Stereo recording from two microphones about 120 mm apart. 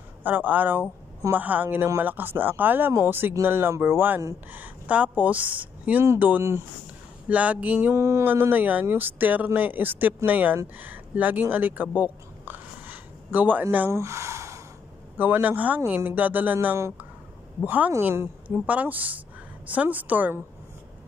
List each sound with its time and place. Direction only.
0.2 s speech: 15° right (ahead or behind)
7.9 s a woman's voice: 25° right (ahead or behind)